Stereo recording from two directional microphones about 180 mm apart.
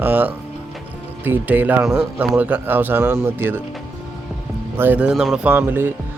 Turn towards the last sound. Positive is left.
turn(degrees=-10)  # may be behind; listen again after turning